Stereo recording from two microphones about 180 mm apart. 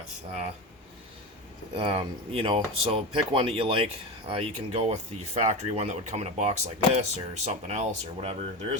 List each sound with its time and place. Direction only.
1.7 s speech: 30° right (ahead or behind)